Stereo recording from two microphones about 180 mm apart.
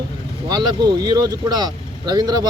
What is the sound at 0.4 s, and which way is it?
Speech, 20° right (ahead or behind).